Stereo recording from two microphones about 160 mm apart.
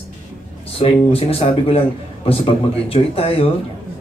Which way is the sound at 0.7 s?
35° left (ahead or behind).